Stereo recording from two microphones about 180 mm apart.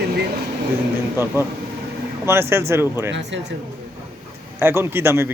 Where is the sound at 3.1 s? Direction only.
80° right.